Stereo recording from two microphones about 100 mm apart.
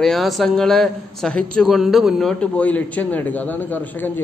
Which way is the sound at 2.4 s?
15° left (ahead or behind).